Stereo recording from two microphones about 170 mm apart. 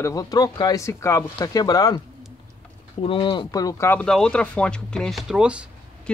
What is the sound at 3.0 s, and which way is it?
Speech, 30° left (ahead or behind).